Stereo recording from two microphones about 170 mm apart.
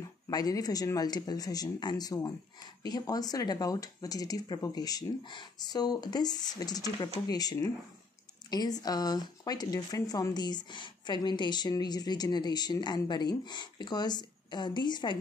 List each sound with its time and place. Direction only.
0.3 s speech: 20° left (ahead or behind)